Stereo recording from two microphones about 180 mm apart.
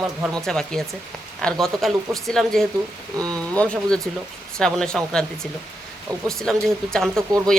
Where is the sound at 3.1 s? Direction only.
20° right (ahead or behind).